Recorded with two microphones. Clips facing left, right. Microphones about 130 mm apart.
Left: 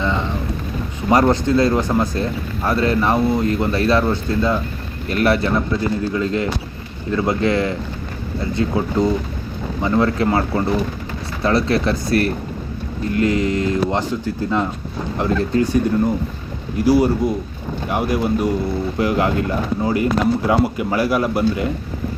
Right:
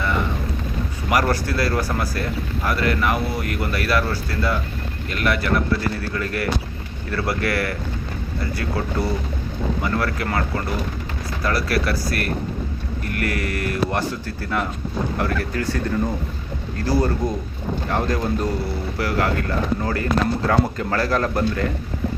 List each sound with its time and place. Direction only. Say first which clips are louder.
0.0 s vehicle: left 2 dB; 20° left (ahead or behind)
1.1 s speech: left 6 dB; 20° left (ahead or behind)
5.1 s speech: left 5 dB; 35° left (ahead or behind); by 21.7 s 15° left (ahead or behind)